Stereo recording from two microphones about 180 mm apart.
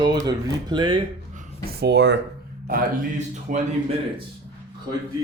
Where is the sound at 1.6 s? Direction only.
65° right (ahead or behind).